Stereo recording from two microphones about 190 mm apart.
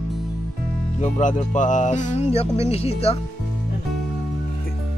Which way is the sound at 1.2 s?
40° left (ahead or behind).